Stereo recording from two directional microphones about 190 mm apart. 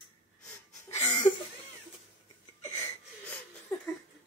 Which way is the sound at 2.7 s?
15° left (ahead or behind).